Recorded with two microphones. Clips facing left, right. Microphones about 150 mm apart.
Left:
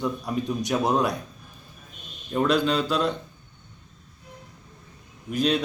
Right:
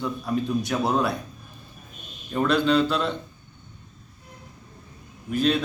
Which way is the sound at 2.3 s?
10° left (ahead or behind).